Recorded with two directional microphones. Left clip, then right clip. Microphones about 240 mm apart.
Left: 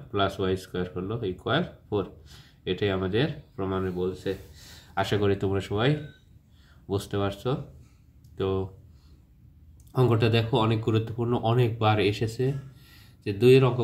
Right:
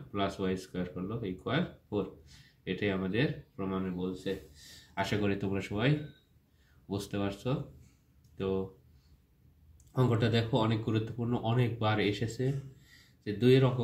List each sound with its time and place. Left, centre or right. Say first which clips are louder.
0.1 s speech: left 7 dB; centre
10.0 s speech: left 6 dB; centre